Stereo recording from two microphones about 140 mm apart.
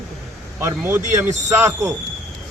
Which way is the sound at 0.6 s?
20° right (ahead or behind).